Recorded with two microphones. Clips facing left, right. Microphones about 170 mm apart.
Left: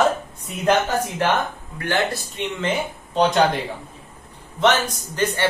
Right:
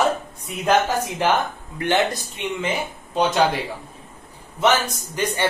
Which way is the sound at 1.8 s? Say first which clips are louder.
Right 2 dB; 20° right (ahead or behind).